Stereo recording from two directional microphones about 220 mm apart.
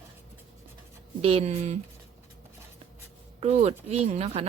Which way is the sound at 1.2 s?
25° right (ahead or behind).